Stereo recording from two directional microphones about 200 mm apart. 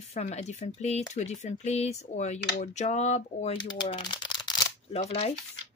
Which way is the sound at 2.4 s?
55° left (ahead or behind).